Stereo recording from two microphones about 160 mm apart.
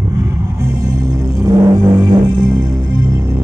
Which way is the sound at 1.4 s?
25° right (ahead or behind).